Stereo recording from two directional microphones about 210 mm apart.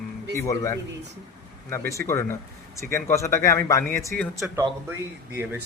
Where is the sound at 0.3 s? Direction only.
15° left (ahead or behind).